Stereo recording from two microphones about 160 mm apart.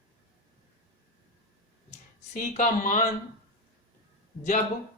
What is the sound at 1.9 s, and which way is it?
Speech, 45° left (ahead or behind).